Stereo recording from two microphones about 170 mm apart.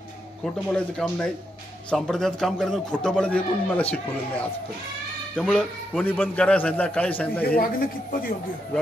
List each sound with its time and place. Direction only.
0.4 s a man's voice: 5° left (ahead or behind)
7.4 s a man's voice: 60° left (ahead or behind)